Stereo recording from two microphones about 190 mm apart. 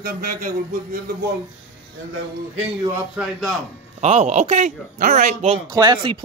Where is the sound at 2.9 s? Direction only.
5° right (ahead or behind).